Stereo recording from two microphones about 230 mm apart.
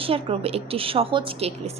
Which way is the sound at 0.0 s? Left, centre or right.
Right.